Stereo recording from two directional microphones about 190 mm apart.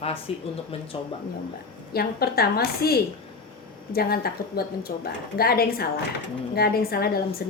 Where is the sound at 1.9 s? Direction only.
55° left (ahead or behind).